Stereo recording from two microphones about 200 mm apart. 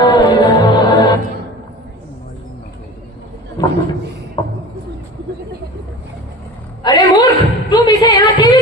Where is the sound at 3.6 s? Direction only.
20° left (ahead or behind).